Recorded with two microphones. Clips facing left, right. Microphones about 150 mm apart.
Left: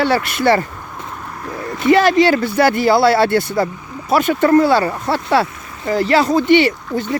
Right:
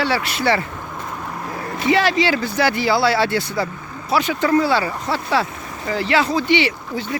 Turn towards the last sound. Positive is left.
turn(degrees=50)  # may be behind; listen again after turning